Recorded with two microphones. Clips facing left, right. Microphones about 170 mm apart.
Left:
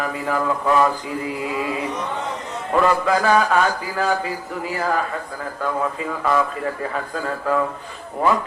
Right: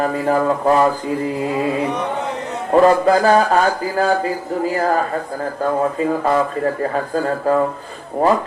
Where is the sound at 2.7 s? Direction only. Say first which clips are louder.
Right 6 dB; 40° right (ahead or behind).